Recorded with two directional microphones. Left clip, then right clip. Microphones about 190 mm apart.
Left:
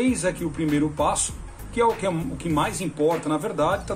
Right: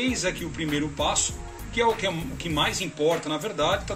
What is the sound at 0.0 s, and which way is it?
Speech, centre (ahead or behind).